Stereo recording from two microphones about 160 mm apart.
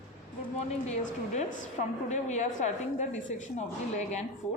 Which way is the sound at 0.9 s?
45° left (ahead or behind).